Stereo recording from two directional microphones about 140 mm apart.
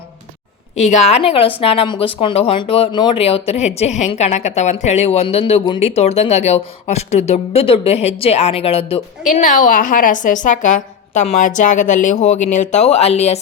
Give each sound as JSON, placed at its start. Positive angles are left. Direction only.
{"t": 0.8, "sound": "speech", "side_deg": 55}
{"t": 9.2, "sound": "a woman's voice", "side_deg": 65}